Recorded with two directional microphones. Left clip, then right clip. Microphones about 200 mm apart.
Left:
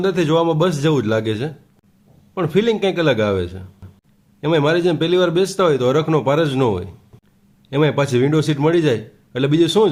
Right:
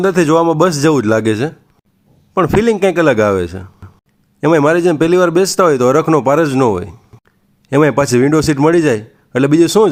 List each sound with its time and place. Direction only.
0.0 s a man's voice: 35° right (ahead or behind)